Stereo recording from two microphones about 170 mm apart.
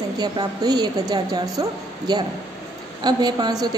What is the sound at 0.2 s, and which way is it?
A woman's voice, 20° right (ahead or behind).